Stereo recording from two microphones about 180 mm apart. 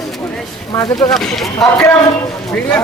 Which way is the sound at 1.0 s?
Centre (ahead or behind).